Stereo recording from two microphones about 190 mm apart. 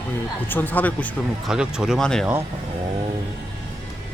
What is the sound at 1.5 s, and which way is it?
Speech, 5° right (ahead or behind).